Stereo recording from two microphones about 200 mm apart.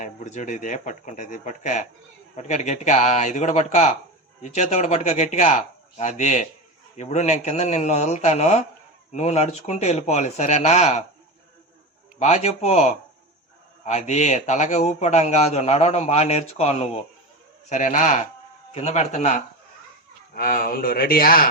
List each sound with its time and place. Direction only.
0.0 s a man's voice: 35° left (ahead or behind)
12.2 s a man's voice: 30° left (ahead or behind)
20.3 s speech: 45° left (ahead or behind)